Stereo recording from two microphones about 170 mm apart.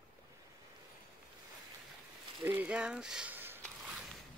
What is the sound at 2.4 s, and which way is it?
Speech, 10° right (ahead or behind).